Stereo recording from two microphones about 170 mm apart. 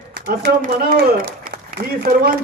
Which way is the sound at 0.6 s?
60° right (ahead or behind).